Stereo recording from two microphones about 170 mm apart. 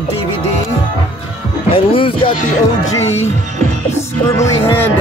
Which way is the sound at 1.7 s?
30° left (ahead or behind).